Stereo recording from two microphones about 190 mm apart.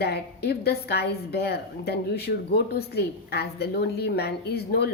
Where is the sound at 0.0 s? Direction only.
60° left (ahead or behind).